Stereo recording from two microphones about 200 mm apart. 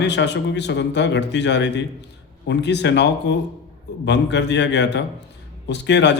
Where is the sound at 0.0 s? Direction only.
60° left (ahead or behind).